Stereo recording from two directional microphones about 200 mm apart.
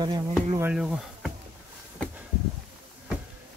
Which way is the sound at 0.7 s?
Centre (ahead or behind).